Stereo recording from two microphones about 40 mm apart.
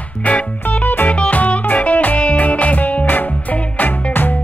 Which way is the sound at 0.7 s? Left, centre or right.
Left.